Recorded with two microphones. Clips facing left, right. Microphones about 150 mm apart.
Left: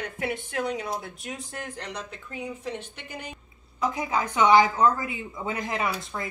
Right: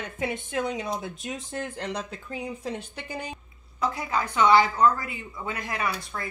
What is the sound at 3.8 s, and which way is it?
A woman's voice, 15° left (ahead or behind).